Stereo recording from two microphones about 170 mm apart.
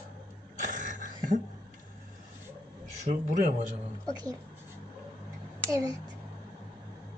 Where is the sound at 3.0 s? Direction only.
45° right (ahead or behind).